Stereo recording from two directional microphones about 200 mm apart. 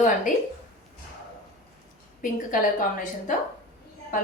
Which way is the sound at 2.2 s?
45° left (ahead or behind).